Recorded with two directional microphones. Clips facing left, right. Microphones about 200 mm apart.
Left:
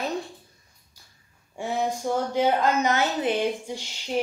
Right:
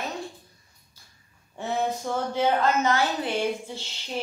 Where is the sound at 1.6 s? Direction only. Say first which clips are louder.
Left 1 dB; 10° left (ahead or behind).